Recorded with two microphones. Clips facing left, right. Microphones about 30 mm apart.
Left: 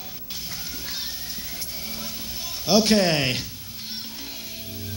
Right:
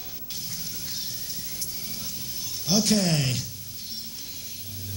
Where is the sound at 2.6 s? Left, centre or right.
Left.